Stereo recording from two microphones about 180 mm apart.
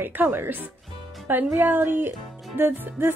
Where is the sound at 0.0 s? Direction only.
10° right (ahead or behind).